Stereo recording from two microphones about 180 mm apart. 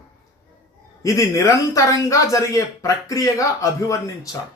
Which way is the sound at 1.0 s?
15° left (ahead or behind).